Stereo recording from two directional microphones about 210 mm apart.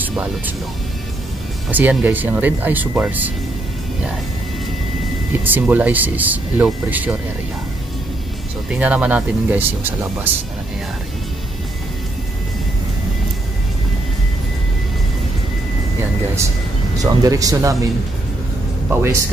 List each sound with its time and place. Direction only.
0.0 s music: 5° right (ahead or behind)
1.7 s speech: 10° right (ahead or behind)
5.4 s speech: 10° right (ahead or behind)
8.6 s speech: 5° right (ahead or behind)
17.0 s speech: 15° right (ahead or behind)
18.9 s speech: 10° right (ahead or behind)